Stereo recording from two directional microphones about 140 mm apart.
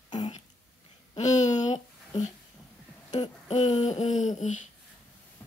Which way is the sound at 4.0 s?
60° left (ahead or behind).